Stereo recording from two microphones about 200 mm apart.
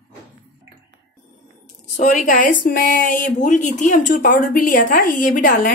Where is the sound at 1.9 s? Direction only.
40° left (ahead or behind).